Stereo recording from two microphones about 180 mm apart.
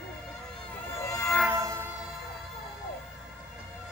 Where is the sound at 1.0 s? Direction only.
15° left (ahead or behind).